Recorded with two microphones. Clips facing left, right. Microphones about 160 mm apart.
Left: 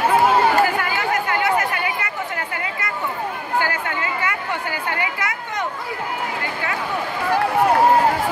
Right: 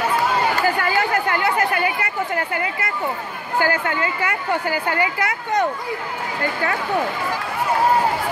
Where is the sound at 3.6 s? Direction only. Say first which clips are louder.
Right 5 dB; 35° right (ahead or behind).